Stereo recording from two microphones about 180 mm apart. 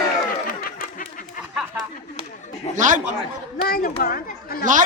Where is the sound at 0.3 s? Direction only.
50° left (ahead or behind).